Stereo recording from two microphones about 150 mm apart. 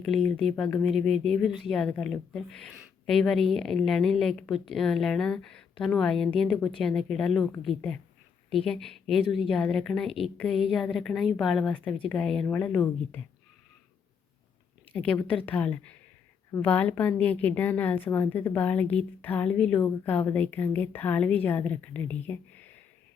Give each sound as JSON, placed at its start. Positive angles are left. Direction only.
{"t": 0.0, "sound": "a woman's voice", "side_deg": 0}
{"t": 14.9, "sound": "a woman's voice", "side_deg": 10}